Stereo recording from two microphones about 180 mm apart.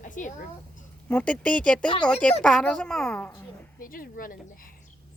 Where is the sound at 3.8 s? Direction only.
50° left (ahead or behind).